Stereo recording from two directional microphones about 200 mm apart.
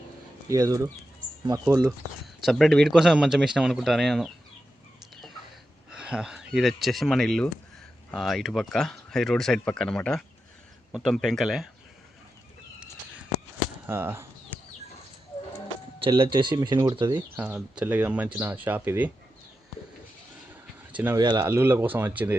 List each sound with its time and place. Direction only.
0.5 s speech: 15° right (ahead or behind)
2.2 s speech: centre (ahead or behind)
5.9 s speech: 5° right (ahead or behind)
13.8 s speech: 10° right (ahead or behind)
16.0 s speech: 25° right (ahead or behind)
17.3 s speech: 5° right (ahead or behind)
20.9 s speech: 10° right (ahead or behind)
21.2 s speech: 20° right (ahead or behind)